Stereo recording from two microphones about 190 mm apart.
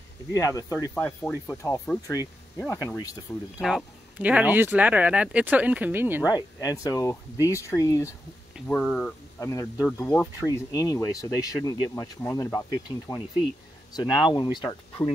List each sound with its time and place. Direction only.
0.3 s speech: 15° left (ahead or behind)
3.5 s speech: 5° right (ahead or behind)
6.2 s speech: 20° left (ahead or behind)
8.6 s speech: 5° left (ahead or behind)
9.4 s speech: 15° left (ahead or behind)
13.9 s speech: 20° left (ahead or behind)